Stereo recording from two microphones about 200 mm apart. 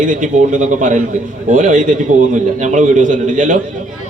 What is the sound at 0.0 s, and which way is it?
A man's voice, 40° right (ahead or behind).